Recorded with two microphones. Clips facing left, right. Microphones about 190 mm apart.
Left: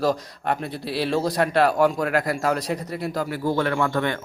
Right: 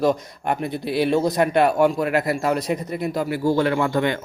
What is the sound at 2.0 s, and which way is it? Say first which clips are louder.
Speech: right 2 dB; 10° right (ahead or behind).